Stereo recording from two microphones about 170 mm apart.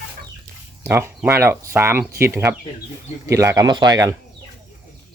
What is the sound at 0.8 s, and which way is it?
Speech, 15° right (ahead or behind).